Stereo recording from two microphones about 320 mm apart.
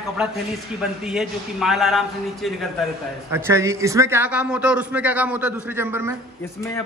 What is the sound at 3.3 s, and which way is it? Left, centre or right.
A man's voice, centre.